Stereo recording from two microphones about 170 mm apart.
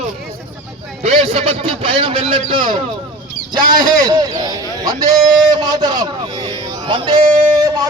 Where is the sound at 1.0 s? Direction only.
35° right (ahead or behind).